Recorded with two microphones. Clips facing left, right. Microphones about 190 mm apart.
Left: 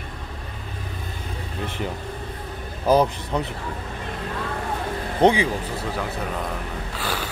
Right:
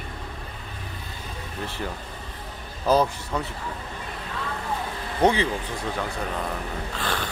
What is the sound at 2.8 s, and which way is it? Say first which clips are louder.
Speech: left 3 dB; 15° left (ahead or behind).